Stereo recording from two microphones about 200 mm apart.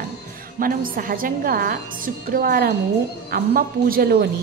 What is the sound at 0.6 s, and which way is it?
A woman's voice, 45° right (ahead or behind).